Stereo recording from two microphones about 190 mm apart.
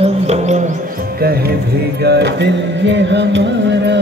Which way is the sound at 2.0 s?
60° right (ahead or behind).